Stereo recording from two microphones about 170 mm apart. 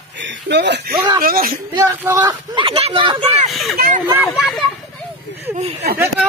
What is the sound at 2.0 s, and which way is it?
Speech, 20° right (ahead or behind).